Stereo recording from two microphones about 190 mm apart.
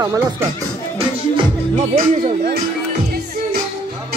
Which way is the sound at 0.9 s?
30° right (ahead or behind).